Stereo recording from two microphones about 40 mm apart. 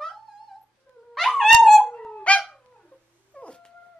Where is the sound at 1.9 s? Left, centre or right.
Centre.